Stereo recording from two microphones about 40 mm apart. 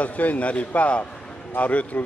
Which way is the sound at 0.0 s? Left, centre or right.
Left.